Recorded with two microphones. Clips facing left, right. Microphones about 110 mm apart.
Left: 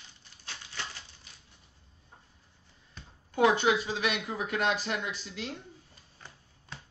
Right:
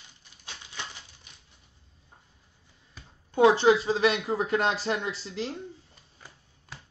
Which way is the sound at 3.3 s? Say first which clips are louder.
Right 5 dB; 30° right (ahead or behind).